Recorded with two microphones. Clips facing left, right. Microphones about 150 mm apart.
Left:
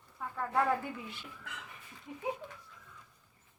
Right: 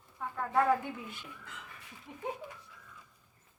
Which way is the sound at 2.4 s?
10° right (ahead or behind).